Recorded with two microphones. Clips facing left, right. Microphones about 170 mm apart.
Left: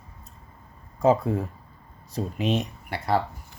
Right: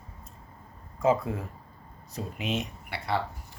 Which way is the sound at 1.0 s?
35° left (ahead or behind).